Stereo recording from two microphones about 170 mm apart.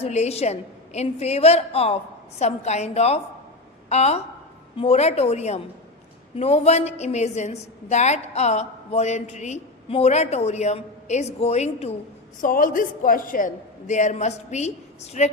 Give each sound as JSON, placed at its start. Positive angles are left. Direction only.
{"t": 0.0, "sound": "a woman's voice", "side_deg": 40}
{"t": 12.4, "sound": "a woman's voice", "side_deg": 50}